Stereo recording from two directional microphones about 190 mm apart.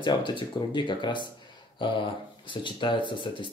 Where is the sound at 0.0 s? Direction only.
25° left (ahead or behind).